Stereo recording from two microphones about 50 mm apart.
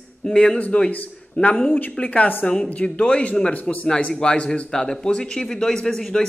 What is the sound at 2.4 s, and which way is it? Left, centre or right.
A man's voice, centre.